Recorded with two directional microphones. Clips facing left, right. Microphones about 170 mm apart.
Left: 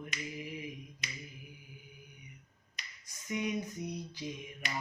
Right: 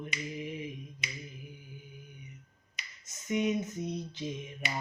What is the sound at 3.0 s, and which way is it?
Finger snapping, 20° right (ahead or behind).